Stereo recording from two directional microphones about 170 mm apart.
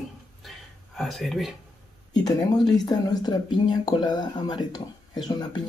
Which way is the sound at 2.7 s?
25° left (ahead or behind).